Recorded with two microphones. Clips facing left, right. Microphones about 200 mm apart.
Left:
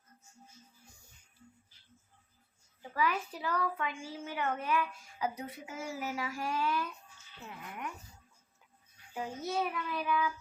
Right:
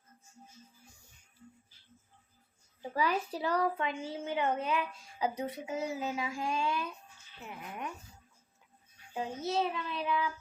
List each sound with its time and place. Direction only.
2.9 s a child's voice: 30° right (ahead or behind)
9.1 s a child's voice: 25° right (ahead or behind)